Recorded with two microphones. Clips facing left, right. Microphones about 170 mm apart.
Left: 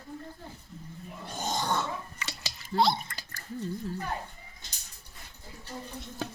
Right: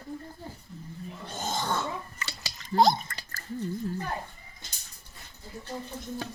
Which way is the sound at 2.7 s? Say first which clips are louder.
Right 4 dB; 45° right (ahead or behind).